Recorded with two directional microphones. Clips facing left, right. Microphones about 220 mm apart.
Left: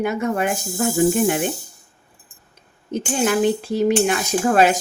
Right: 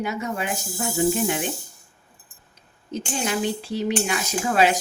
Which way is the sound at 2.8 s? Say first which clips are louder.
Left 7 dB; 50° left (ahead or behind).